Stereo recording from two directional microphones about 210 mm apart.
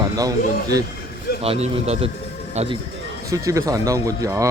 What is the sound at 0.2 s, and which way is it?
Speech, 15° right (ahead or behind).